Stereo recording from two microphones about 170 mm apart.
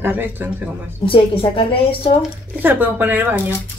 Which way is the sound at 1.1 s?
30° left (ahead or behind).